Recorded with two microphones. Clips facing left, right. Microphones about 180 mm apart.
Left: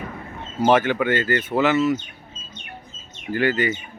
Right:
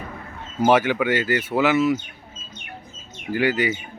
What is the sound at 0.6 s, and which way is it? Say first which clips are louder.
Speech: even; 10° right (ahead or behind).